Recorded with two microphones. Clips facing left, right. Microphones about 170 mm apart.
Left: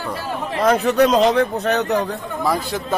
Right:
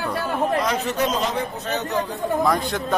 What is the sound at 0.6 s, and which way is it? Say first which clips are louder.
Speech: left 8 dB; 55° left (ahead or behind).